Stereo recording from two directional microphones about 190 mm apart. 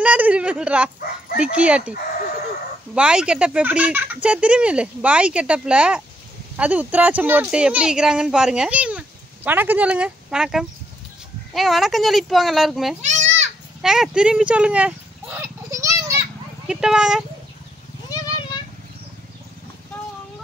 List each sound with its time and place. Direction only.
0.0 s speech: 5° right (ahead or behind)
2.9 s speech: 5° right (ahead or behind)
13.0 s children playing: 40° right (ahead or behind)
13.7 s a sound: centre (ahead or behind)
16.6 s speech: 5° right (ahead or behind)